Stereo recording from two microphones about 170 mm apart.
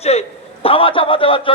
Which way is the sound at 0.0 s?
40° left (ahead or behind).